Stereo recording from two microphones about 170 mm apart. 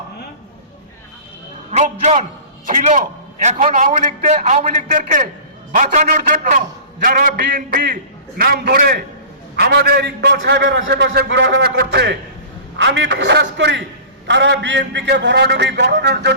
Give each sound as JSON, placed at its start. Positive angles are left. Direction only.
{"t": 1.7, "sound": "a man's voice", "side_deg": -45}
{"t": 9.6, "sound": "a man's voice", "side_deg": -70}
{"t": 12.7, "sound": "a man's voice", "side_deg": -90}